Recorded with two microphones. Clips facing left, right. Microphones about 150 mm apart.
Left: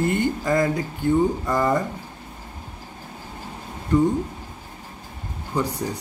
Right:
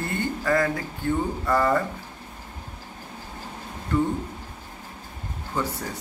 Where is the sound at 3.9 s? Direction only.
15° left (ahead or behind).